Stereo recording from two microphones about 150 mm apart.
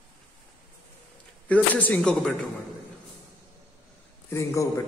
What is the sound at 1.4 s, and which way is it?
Speech, 10° left (ahead or behind).